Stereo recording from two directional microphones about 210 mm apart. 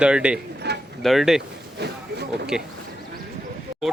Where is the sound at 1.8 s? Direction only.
50° right (ahead or behind).